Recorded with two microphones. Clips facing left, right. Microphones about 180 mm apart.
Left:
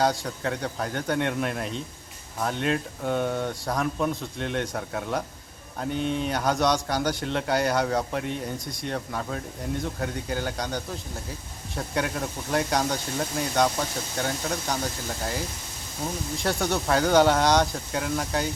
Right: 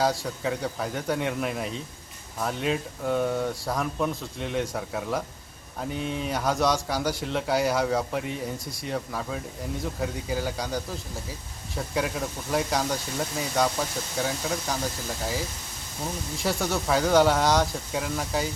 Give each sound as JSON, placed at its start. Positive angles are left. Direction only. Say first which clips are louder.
{"t": 0.0, "sound": "a man's voice", "louder": "left 1 dB", "side_deg": 0}